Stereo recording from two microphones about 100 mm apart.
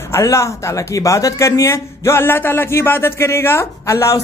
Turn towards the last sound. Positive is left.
turn(degrees=30)  # may be behind; listen again after turning